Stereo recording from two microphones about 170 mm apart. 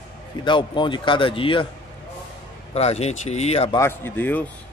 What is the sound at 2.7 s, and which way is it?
Speech, 40° left (ahead or behind).